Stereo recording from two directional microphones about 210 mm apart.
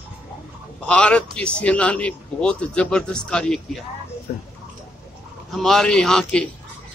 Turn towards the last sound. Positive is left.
turn(degrees=5)  # may be behind; listen again after turning